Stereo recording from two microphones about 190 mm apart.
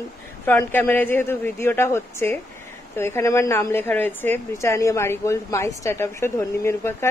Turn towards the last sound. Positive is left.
turn(degrees=15)  # may be behind; listen again after turning